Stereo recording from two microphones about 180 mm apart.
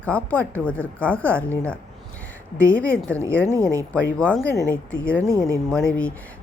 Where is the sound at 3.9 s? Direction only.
5° left (ahead or behind).